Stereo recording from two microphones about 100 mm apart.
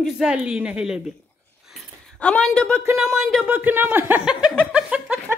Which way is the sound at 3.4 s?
15° right (ahead or behind).